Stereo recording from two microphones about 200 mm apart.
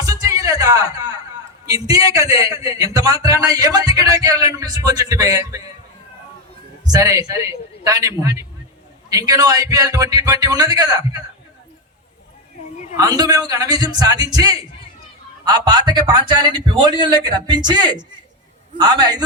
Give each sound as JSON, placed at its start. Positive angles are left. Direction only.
{"t": 0.0, "sound": "music", "side_deg": -15}
{"t": 1.6, "sound": "a man's voice", "side_deg": -15}
{"t": 6.8, "sound": "a man's voice", "side_deg": -15}
{"t": 12.7, "sound": "a sound", "side_deg": 35}
{"t": 13.0, "sound": "a man's voice", "side_deg": -20}